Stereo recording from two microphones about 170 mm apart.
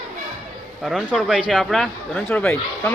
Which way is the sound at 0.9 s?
Centre (ahead or behind).